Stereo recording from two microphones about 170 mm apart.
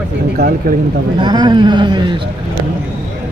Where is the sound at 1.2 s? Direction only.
25° right (ahead or behind).